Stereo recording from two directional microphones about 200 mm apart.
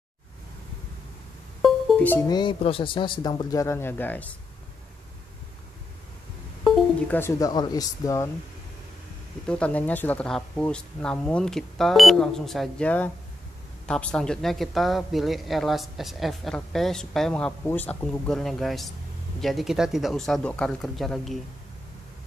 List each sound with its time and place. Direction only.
1.6 s music: centre (ahead or behind)
2.2 s speech: 20° left (ahead or behind)
6.6 s music: centre (ahead or behind)
7.2 s speech: 15° left (ahead or behind)
9.5 s speech: 5° left (ahead or behind)